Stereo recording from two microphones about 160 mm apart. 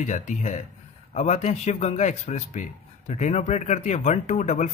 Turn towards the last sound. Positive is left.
turn(degrees=50)  # may be behind; listen again after turning